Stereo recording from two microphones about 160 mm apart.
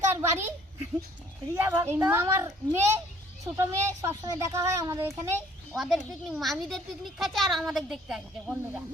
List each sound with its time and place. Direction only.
0.1 s a sound: 15° right (ahead or behind)
1.5 s speech: 15° right (ahead or behind)
5.7 s speech: centre (ahead or behind)